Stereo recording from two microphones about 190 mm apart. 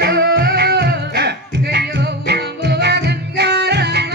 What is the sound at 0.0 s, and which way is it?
Music, 55° right (ahead or behind).